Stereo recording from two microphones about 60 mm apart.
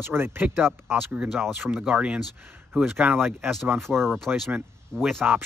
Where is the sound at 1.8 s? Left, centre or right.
Centre.